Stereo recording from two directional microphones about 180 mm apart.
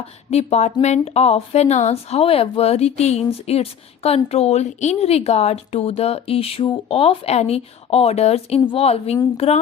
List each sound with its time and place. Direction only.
0.3 s a woman's voice: 35° left (ahead or behind)